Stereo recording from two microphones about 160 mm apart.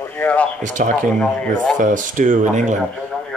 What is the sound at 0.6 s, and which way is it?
Speech, 50° right (ahead or behind).